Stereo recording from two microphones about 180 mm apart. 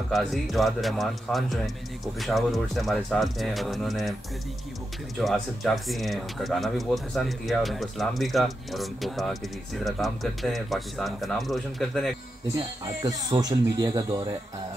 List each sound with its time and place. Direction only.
0.1 s speech: centre (ahead or behind)
5.2 s speech: centre (ahead or behind)
12.5 s speech: 20° right (ahead or behind)